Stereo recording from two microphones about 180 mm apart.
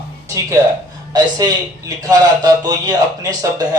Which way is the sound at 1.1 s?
25° right (ahead or behind).